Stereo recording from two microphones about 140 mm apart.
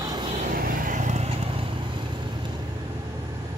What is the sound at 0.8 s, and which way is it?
Vehicle, 60° right (ahead or behind).